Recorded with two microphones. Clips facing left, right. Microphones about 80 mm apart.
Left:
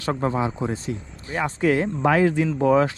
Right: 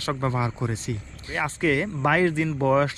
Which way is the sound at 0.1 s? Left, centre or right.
Left.